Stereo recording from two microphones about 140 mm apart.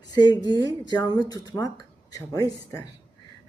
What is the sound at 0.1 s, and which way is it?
Speech, 30° left (ahead or behind).